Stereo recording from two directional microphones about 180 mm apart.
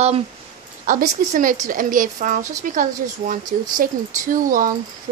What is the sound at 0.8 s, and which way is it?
Speech, 45° right (ahead or behind).